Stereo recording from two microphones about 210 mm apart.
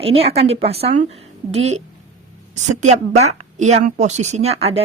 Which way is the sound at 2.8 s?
35° right (ahead or behind).